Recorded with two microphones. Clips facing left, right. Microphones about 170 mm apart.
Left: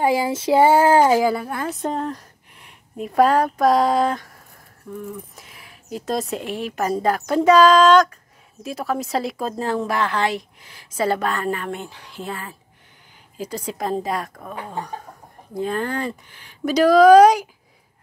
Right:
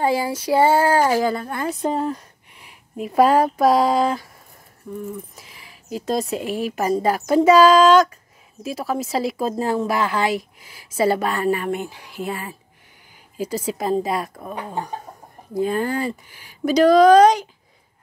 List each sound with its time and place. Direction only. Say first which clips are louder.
0.0 s child singing: left 1 dB; 15° left (ahead or behind)
1.2 s a woman's voice: left 1 dB; 5° left (ahead or behind); by 15.0 s 20° right (ahead or behind)
15.5 s a woman's voice: right 3 dB; 5° right (ahead or behind)
16.7 s child singing: left 1 dB; 5° left (ahead or behind)